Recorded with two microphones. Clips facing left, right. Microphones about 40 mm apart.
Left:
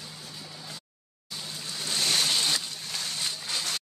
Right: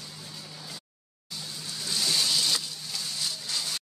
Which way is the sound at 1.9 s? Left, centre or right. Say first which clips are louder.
Left 1 dB; left.